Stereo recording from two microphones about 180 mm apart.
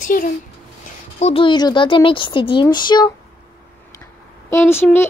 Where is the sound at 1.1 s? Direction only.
35° left (ahead or behind).